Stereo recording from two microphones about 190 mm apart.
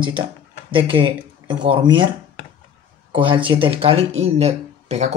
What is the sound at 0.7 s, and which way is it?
Speech, 25° right (ahead or behind).